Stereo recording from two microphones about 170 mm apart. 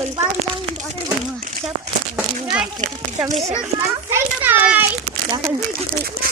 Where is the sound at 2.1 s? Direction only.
5° right (ahead or behind).